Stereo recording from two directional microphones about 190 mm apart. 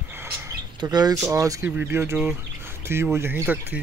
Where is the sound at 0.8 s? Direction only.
20° right (ahead or behind).